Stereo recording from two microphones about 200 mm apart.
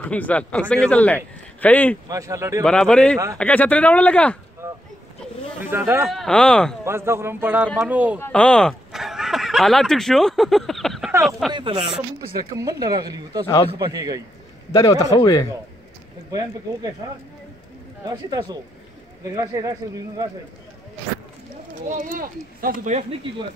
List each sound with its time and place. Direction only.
0.0 s speech: 5° left (ahead or behind)
2.0 s speech: 15° right (ahead or behind)
2.6 s speech: 5° left (ahead or behind)
4.6 s a sound: 10° right (ahead or behind)
5.6 s speech: 10° right (ahead or behind)
6.0 s speech: centre (ahead or behind)
6.8 s speech: 10° right (ahead or behind)
8.2 s speech: 5° left (ahead or behind)
11.5 s speech: 25° right (ahead or behind)
14.7 s speech: 15° left (ahead or behind)
16.3 s speech: 20° right (ahead or behind)
18.0 s speech: 20° right (ahead or behind)
21.8 s speech: 40° right (ahead or behind)